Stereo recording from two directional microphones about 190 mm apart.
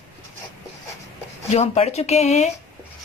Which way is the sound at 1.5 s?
35° left (ahead or behind).